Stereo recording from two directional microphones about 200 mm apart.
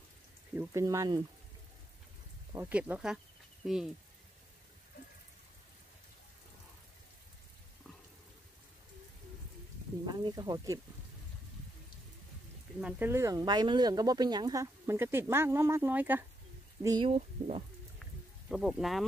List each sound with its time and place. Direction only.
0.6 s speech: 15° right (ahead or behind)
2.5 s speech: 10° right (ahead or behind)
10.0 s speech: 20° right (ahead or behind)
12.8 s speech: 10° right (ahead or behind)
17.1 s speech: 30° right (ahead or behind)
18.5 s speech: 5° right (ahead or behind)